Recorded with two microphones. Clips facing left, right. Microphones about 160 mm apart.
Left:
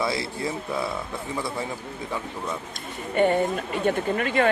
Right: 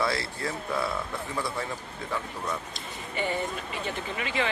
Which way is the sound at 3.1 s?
55° left (ahead or behind).